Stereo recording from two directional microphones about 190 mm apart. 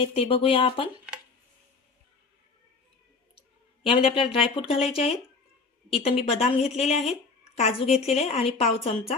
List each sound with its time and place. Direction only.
0.0 s speech: 30° left (ahead or behind)
3.8 s a woman's voice: 30° left (ahead or behind)